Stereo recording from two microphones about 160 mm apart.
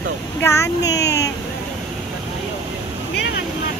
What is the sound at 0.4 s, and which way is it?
Speech, 15° left (ahead or behind).